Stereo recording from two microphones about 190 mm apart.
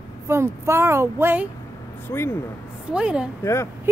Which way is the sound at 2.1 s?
15° left (ahead or behind).